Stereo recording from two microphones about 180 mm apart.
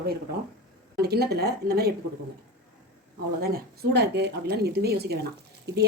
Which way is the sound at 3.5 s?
65° right (ahead or behind).